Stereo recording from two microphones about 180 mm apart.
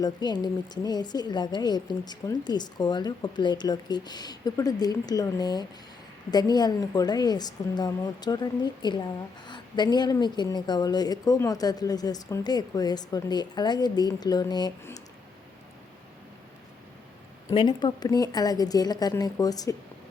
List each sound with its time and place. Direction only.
0.0 s a woman's voice: 25° left (ahead or behind)
17.5 s a woman's voice: 25° left (ahead or behind)